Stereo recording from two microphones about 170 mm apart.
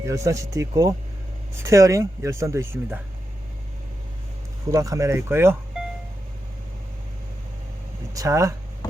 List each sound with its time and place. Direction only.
0.0 s speech: 20° right (ahead or behind)
4.7 s speech: 20° right (ahead or behind)
8.1 s speech: 20° right (ahead or behind)